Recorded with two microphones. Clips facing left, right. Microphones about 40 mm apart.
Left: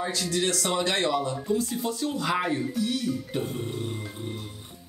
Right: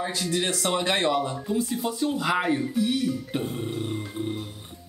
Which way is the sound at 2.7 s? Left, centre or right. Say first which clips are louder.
Right 3 dB; centre.